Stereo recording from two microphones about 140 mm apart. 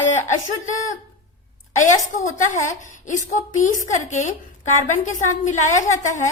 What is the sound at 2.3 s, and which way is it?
A woman's voice, 65° left (ahead or behind).